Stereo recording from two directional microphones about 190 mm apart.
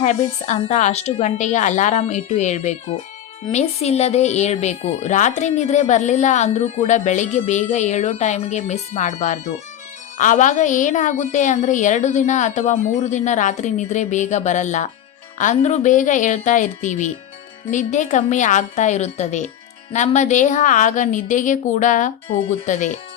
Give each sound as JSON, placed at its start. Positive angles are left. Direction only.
{"t": 0.0, "sound": "speech", "side_deg": 35}